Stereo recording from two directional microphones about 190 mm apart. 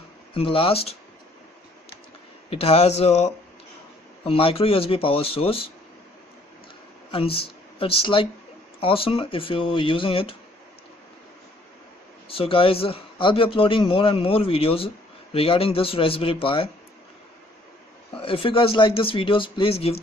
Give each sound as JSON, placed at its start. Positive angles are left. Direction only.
{"t": 0.3, "sound": "a man's voice", "side_deg": 30}
{"t": 2.5, "sound": "a man's voice", "side_deg": 30}
{"t": 7.1, "sound": "a man's voice", "side_deg": 30}
{"t": 12.3, "sound": "a man's voice", "side_deg": 30}
{"t": 18.2, "sound": "a man's voice", "side_deg": 30}